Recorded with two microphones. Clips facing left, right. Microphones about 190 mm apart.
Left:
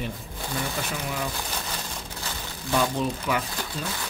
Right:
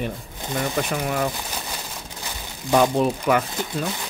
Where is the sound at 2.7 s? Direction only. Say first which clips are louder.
Right 7 dB; 60° right (ahead or behind).